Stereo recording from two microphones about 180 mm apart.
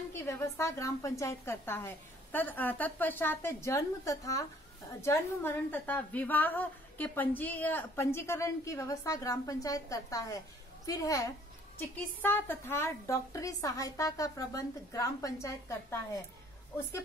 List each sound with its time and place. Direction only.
0.1 s a woman's voice: 15° left (ahead or behind)